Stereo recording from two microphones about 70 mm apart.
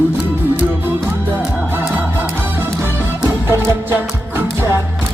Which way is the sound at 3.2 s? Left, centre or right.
Right.